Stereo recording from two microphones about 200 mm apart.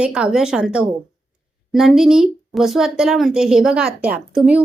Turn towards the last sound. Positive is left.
turn(degrees=-5)  # may be behind; listen again after turning